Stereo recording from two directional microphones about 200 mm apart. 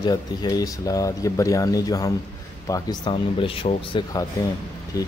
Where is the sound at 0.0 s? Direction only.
20° left (ahead or behind).